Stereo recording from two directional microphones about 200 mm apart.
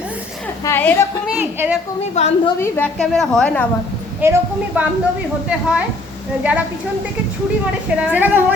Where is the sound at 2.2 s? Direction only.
35° left (ahead or behind).